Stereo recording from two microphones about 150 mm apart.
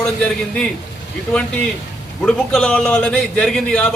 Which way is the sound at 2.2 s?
5° left (ahead or behind).